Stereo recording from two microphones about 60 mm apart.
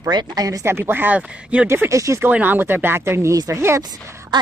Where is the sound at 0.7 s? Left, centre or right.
Right.